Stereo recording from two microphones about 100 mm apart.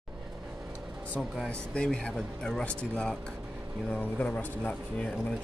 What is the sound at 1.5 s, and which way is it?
Speech, 10° left (ahead or behind).